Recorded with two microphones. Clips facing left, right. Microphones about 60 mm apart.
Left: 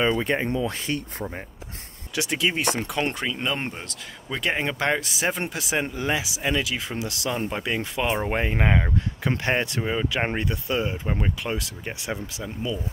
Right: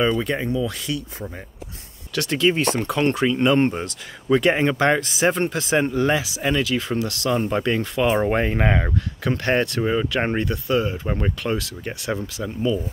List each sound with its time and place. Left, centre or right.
0.0 s speech: left
2.1 s speech: centre
7.2 s speech: centre
9.4 s speech: centre
10.4 s speech: centre
11.1 s speech: centre
11.4 s speech: centre